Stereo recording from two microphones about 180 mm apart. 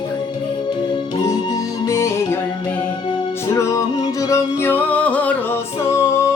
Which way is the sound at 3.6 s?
15° left (ahead or behind).